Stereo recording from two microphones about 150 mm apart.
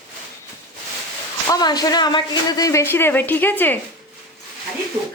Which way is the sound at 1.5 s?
25° left (ahead or behind).